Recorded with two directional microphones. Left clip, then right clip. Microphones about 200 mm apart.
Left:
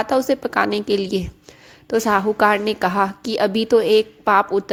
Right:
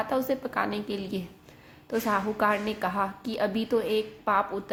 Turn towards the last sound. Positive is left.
turn(degrees=45)  # may be behind; listen again after turning